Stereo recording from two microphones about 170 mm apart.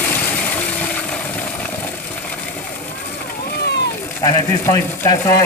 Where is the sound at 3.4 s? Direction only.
75° left (ahead or behind).